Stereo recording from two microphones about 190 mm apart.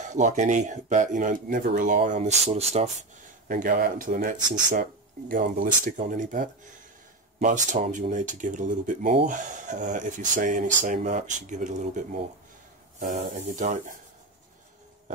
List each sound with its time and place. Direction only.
0.0 s speech: 40° right (ahead or behind)